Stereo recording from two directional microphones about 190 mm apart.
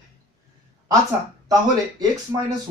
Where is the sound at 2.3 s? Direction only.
20° right (ahead or behind).